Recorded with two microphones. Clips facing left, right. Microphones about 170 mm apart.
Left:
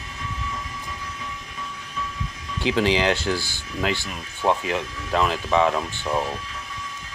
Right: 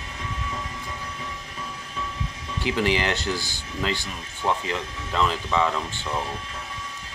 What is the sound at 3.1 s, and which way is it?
Speech, 20° right (ahead or behind).